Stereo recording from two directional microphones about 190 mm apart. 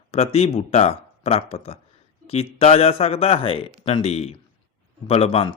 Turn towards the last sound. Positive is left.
turn(degrees=30)  # may be behind; listen again after turning